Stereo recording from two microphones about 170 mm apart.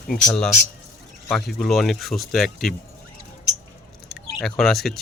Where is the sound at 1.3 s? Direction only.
5° left (ahead or behind).